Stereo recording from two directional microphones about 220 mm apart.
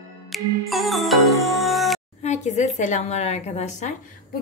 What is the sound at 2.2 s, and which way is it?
A woman's voice, 30° left (ahead or behind).